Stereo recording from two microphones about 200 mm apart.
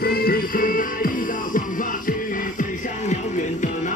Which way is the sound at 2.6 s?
40° left (ahead or behind).